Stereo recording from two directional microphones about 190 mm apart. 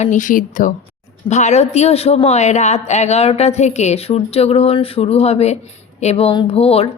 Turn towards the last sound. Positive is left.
turn(degrees=30)  # may be behind; listen again after turning